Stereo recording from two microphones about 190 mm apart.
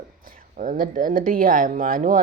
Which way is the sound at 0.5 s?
45° right (ahead or behind).